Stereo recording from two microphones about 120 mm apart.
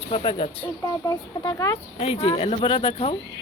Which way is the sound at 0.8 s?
25° left (ahead or behind).